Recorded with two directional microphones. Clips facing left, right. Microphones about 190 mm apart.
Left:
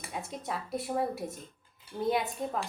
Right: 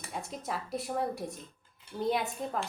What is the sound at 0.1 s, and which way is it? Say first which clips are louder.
A woman's voice: even; centre (ahead or behind).